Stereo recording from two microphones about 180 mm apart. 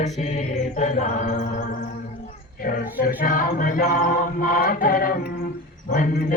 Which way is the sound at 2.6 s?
55° left (ahead or behind).